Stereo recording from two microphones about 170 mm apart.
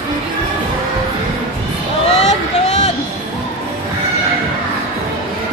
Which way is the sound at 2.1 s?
40° left (ahead or behind).